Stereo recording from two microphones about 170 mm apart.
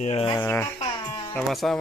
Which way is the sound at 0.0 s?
35° left (ahead or behind).